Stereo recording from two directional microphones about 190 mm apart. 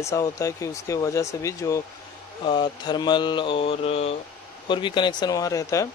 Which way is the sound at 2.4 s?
25° left (ahead or behind).